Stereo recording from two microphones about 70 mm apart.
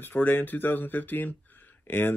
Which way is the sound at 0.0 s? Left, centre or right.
Left.